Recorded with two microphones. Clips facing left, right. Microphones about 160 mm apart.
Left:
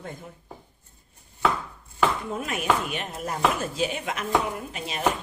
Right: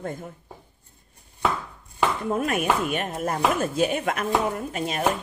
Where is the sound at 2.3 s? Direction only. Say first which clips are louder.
Right 3 dB; 55° right (ahead or behind).